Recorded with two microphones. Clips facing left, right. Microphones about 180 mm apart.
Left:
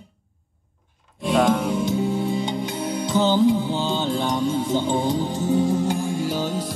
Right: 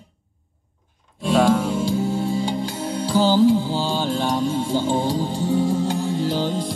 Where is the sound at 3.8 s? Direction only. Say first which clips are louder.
Right 1 dB; 20° left (ahead or behind).